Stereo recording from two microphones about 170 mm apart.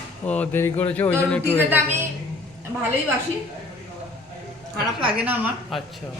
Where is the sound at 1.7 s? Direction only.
15° right (ahead or behind).